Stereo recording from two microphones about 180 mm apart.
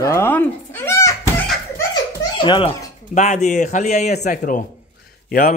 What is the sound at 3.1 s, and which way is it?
Speech, 40° left (ahead or behind).